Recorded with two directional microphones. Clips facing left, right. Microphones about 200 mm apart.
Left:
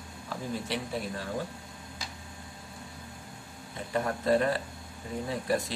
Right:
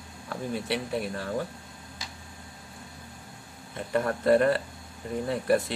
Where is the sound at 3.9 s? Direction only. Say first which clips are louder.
Right 4 dB; 60° right (ahead or behind).